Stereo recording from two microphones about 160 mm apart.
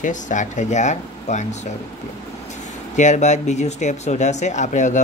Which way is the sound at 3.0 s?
45° left (ahead or behind).